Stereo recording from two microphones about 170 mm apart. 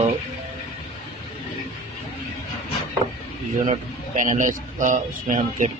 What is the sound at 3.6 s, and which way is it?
A man's voice, 45° right (ahead or behind).